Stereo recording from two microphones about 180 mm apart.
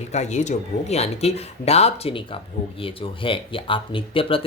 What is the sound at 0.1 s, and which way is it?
Speech, 40° left (ahead or behind).